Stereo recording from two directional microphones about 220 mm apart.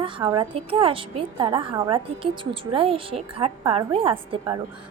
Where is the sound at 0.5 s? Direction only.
25° right (ahead or behind).